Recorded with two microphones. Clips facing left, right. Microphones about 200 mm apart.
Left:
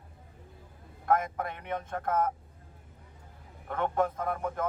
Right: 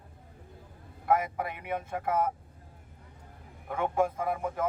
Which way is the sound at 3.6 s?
10° right (ahead or behind).